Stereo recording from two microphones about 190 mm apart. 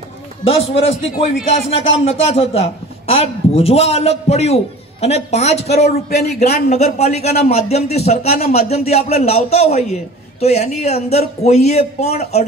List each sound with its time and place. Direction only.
0.4 s a man's voice: 30° left (ahead or behind)